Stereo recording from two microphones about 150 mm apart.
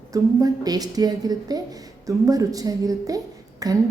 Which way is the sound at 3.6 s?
25° right (ahead or behind).